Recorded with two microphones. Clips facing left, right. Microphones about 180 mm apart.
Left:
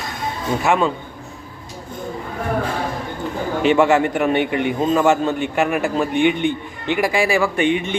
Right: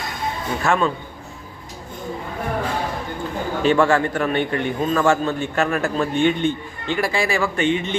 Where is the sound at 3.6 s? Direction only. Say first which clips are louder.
Left 2 dB; 20° left (ahead or behind).